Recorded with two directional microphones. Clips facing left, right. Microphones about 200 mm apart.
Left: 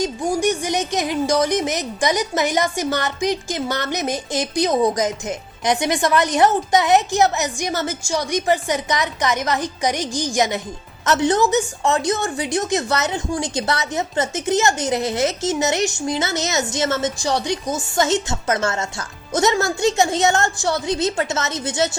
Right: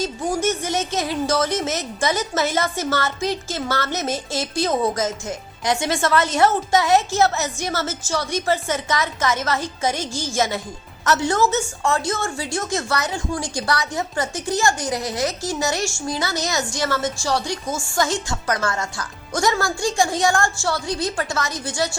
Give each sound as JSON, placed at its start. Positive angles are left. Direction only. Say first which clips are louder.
{"t": 0.0, "sound": "a woman's voice", "louder": "left 2 dB", "side_deg": 15}